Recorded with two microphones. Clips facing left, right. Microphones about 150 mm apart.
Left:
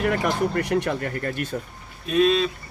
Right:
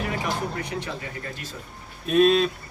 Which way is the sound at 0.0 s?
60° left (ahead or behind).